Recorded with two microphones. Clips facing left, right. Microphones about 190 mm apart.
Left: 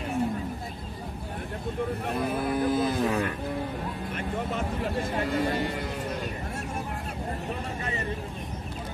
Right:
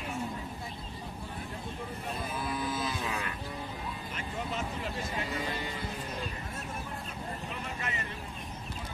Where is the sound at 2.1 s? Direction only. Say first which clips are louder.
Left 6 dB; 60° left (ahead or behind).